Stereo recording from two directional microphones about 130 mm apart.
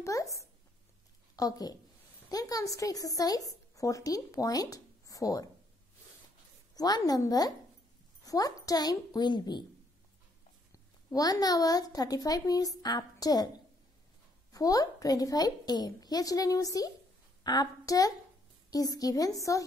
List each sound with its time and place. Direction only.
0.0 s a woman's voice: 25° left (ahead or behind)
6.7 s a woman's voice: 30° left (ahead or behind)
11.1 s a woman's voice: 30° left (ahead or behind)
14.5 s a woman's voice: 30° left (ahead or behind)